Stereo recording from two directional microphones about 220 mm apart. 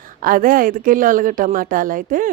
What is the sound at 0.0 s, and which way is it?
A woman's voice, 40° right (ahead or behind).